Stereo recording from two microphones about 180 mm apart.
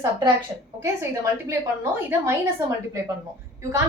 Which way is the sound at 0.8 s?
15° right (ahead or behind).